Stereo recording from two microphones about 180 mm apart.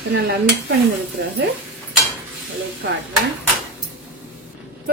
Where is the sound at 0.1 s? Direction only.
65° right (ahead or behind).